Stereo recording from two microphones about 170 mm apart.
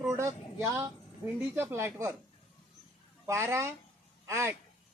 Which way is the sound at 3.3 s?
15° right (ahead or behind).